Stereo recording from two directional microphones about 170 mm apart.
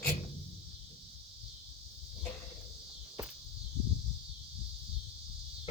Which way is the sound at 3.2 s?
15° right (ahead or behind).